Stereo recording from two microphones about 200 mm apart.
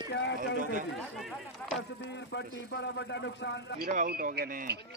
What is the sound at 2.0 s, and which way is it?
A man's voice, 60° left (ahead or behind).